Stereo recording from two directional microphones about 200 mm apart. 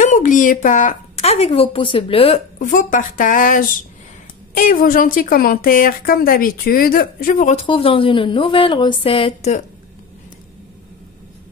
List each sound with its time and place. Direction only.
0.0 s a woman's voice: 40° left (ahead or behind)
7.5 s speech: 25° left (ahead or behind)